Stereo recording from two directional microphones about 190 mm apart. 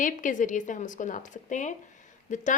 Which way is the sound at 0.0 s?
45° left (ahead or behind).